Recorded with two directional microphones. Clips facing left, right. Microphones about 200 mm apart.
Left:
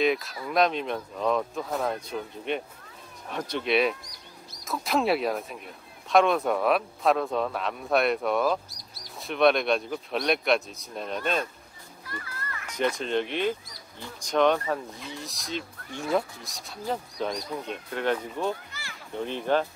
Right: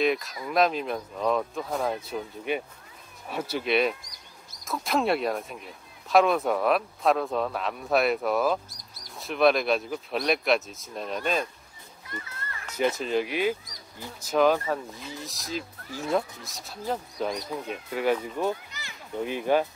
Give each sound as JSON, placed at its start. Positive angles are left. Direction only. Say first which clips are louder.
{"t": 0.0, "sound": "speech", "louder": "even", "side_deg": 0}
{"t": 12.1, "sound": "children playing", "louder": "left 1 dB", "side_deg": -25}
{"t": 12.7, "sound": "speech", "louder": "right 1 dB", "side_deg": -5}
{"t": 18.4, "sound": "a sound", "louder": "right 2 dB", "side_deg": -20}
{"t": 19.2, "sound": "speech", "louder": "right 1 dB", "side_deg": -10}